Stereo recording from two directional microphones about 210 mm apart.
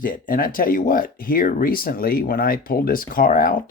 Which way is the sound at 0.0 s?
40° left (ahead or behind).